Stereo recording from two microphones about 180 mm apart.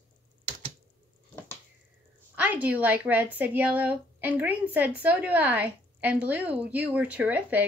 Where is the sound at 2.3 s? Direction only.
10° right (ahead or behind).